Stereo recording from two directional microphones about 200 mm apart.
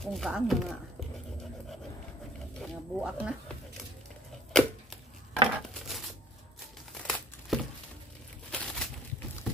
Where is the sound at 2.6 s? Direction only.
5° right (ahead or behind).